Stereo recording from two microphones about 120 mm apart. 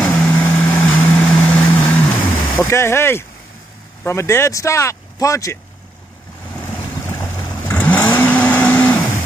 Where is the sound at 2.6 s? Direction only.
20° left (ahead or behind).